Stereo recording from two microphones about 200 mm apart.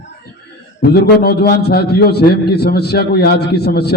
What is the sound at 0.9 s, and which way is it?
A man's voice, 55° left (ahead or behind).